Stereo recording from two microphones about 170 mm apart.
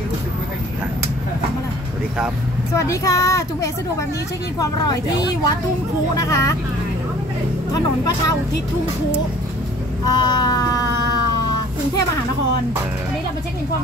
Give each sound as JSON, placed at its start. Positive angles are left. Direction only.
{"t": 2.7, "sound": "speech", "side_deg": 20}
{"t": 10.0, "sound": "speech", "side_deg": 25}